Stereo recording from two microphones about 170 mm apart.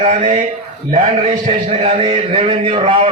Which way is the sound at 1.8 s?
40° right (ahead or behind).